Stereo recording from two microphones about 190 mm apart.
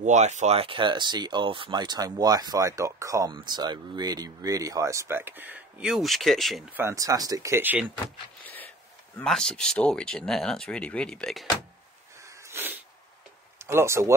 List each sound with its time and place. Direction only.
0.0 s speech: 40° right (ahead or behind); by 6.8 s centre (ahead or behind)
6.8 s speech: 15° right (ahead or behind)
9.2 s speech: 5° left (ahead or behind)
12.3 s sneeze: 15° right (ahead or behind)
13.6 s speech: 15° right (ahead or behind)